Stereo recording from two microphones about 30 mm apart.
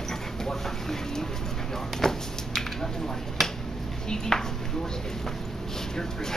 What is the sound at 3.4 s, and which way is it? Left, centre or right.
Finger snapping, centre.